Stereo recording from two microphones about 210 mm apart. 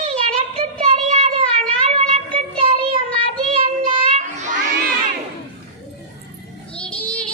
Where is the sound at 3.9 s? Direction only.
30° right (ahead or behind).